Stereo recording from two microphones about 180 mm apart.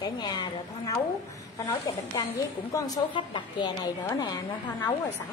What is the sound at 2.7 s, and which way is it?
A woman's voice, 25° left (ahead or behind).